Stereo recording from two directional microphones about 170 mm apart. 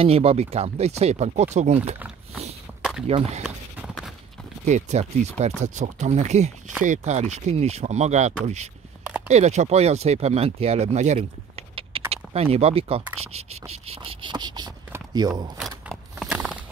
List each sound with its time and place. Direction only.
0.0 s speech: 35° right (ahead or behind)
2.8 s a sound: centre (ahead or behind)
3.1 s speech: 40° right (ahead or behind)
3.4 s clip-clop: 5° right (ahead or behind)
4.6 s speech: 45° right (ahead or behind)
13.2 s insect: 35° right (ahead or behind)
15.1 s speech: 25° right (ahead or behind)
15.9 s a sound: centre (ahead or behind)